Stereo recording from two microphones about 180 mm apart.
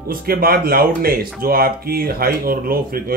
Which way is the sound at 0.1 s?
55° right (ahead or behind).